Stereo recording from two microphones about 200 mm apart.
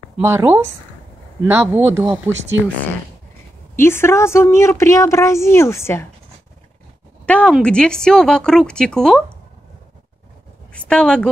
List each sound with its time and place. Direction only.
0.2 s speech: 15° right (ahead or behind)
3.7 s a woman's voice: 10° left (ahead or behind)
7.2 s speech: 5° left (ahead or behind)
10.7 s speech: 5° left (ahead or behind)